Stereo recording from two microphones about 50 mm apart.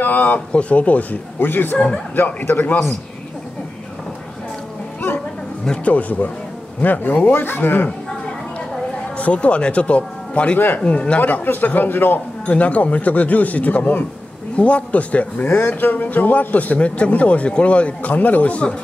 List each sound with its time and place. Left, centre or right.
0.0 s speech: left
5.9 s a man's voice: left
9.2 s a man's voice: left
11.4 s speech: left
12.4 s a man's voice: left
15.8 s a man's voice: left